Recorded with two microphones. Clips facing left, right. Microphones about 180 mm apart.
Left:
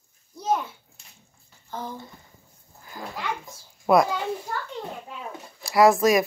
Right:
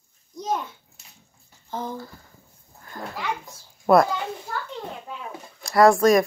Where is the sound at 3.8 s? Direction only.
Centre (ahead or behind).